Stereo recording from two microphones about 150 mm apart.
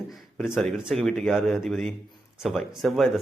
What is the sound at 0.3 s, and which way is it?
Speech, centre (ahead or behind).